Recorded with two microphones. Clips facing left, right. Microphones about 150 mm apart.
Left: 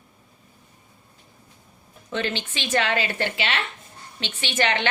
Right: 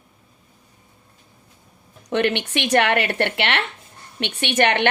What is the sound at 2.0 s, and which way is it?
A woman's voice, 70° right (ahead or behind).